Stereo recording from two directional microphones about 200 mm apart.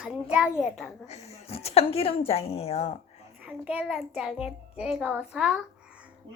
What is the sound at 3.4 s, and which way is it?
A child's voice, 5° right (ahead or behind).